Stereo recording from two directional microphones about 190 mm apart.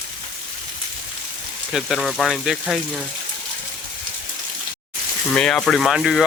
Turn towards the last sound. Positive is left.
turn(degrees=0)  # may be behind; listen again after turning